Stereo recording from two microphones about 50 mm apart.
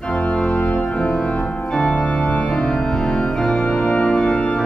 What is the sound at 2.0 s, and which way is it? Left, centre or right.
Organ, left.